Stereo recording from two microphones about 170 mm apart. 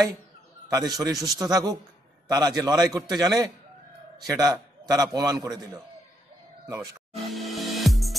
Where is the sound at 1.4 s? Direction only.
20° right (ahead or behind).